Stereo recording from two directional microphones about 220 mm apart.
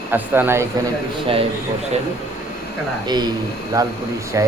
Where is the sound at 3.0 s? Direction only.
20° right (ahead or behind).